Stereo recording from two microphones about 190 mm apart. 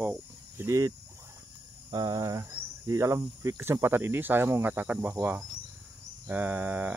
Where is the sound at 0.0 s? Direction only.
10° right (ahead or behind).